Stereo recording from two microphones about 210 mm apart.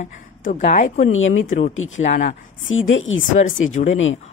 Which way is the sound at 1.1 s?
70° left (ahead or behind).